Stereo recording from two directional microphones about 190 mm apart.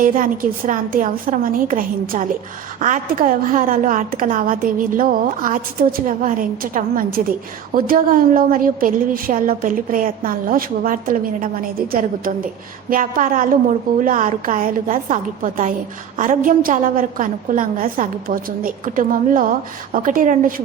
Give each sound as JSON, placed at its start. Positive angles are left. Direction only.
{"t": 0.0, "sound": "a woman's voice", "side_deg": -45}